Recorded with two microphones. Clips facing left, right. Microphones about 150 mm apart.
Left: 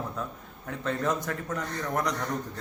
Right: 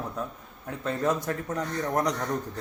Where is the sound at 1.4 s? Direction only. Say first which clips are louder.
Right 3 dB; 35° right (ahead or behind).